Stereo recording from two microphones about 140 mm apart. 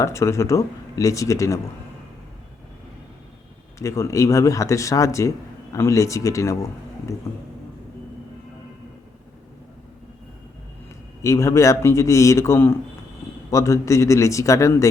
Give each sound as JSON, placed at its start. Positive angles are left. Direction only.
{"t": 0.0, "sound": "speech", "side_deg": 20}
{"t": 3.8, "sound": "speech", "side_deg": 20}
{"t": 11.2, "sound": "speech", "side_deg": 20}